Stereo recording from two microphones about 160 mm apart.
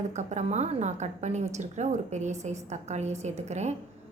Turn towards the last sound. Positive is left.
turn(degrees=-45)  # may be behind; listen again after turning